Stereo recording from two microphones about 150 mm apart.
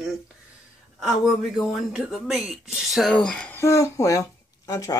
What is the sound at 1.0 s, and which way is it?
Speech, centre (ahead or behind).